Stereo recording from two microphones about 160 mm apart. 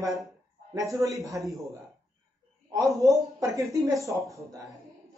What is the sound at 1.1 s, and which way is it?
Speech, 20° right (ahead or behind).